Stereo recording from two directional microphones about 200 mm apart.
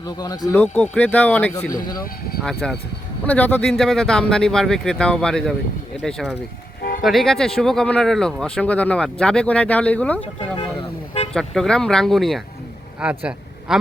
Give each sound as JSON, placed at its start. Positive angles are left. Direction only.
{"t": 0.0, "sound": "speech", "side_deg": 20}
{"t": 10.6, "sound": "vehicle", "side_deg": 25}
{"t": 11.3, "sound": "a man's voice", "side_deg": 0}